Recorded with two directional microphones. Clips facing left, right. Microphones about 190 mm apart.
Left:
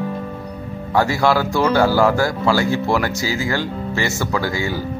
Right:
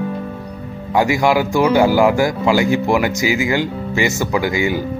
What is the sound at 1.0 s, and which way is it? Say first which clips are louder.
Speech: right 2 dB; 15° right (ahead or behind).